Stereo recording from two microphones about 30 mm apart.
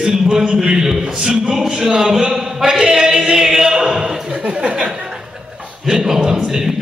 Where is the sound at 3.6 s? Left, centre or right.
Right.